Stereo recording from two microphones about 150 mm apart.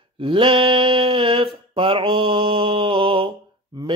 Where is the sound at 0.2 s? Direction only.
35° right (ahead or behind).